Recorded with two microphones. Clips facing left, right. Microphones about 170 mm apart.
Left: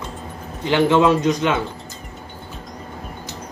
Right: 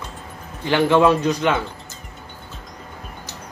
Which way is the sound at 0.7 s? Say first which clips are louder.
Even; 20° left (ahead or behind).